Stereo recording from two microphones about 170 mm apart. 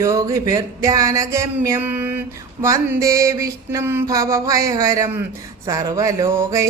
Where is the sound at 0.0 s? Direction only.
20° right (ahead or behind).